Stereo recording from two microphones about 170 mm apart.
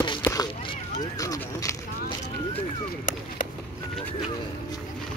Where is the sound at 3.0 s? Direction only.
55° left (ahead or behind).